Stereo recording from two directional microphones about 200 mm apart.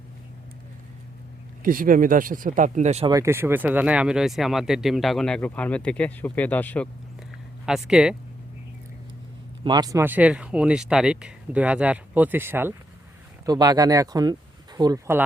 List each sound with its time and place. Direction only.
1.6 s speech: 45° right (ahead or behind)
3.1 s speech: 15° right (ahead or behind); by 6.8 s 10° left (ahead or behind)
7.6 s speech: 5° right (ahead or behind)
9.6 s speech: 20° right (ahead or behind)